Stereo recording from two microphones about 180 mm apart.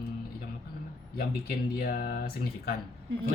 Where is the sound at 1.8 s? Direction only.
55° left (ahead or behind).